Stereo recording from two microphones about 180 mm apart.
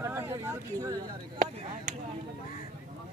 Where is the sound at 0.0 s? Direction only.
15° right (ahead or behind).